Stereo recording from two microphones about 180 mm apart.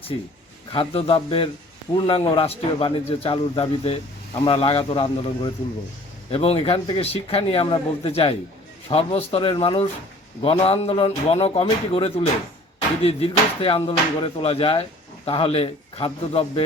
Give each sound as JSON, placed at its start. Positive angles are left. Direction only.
{"t": 0.7, "sound": "a man's voice", "side_deg": 30}